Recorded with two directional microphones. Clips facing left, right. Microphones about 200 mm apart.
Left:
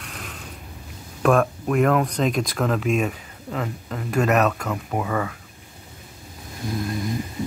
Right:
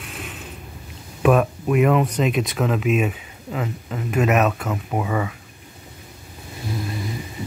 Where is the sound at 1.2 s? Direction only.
5° right (ahead or behind).